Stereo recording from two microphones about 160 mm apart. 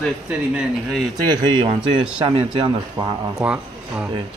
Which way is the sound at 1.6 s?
35° right (ahead or behind).